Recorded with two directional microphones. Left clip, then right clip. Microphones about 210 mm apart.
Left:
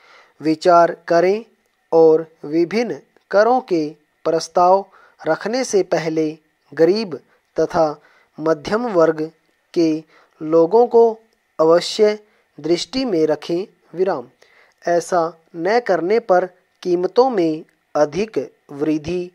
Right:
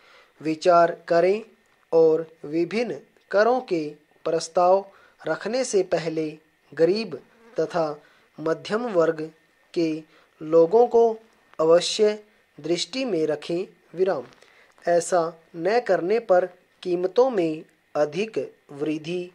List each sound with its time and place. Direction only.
0.0 s speech: 45° left (ahead or behind)